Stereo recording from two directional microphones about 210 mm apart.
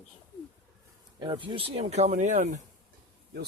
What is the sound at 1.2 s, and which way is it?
Speech, 20° right (ahead or behind).